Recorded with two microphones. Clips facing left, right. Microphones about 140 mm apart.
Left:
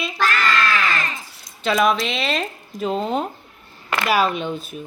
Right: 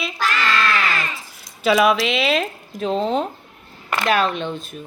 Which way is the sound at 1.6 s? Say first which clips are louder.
Right 2 dB; 5° right (ahead or behind).